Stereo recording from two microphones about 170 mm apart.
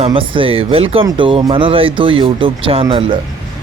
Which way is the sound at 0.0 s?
30° right (ahead or behind).